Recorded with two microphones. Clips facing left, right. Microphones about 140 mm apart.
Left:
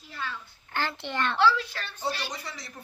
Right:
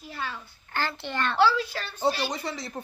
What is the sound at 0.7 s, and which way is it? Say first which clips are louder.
Speech: right 1 dB; 20° left (ahead or behind).